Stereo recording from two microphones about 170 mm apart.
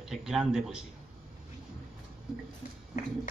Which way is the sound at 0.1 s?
5° right (ahead or behind).